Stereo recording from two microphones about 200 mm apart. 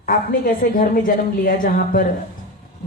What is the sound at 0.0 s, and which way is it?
A woman's voice, 45° left (ahead or behind).